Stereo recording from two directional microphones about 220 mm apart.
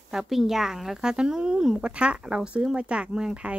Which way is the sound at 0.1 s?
Centre (ahead or behind).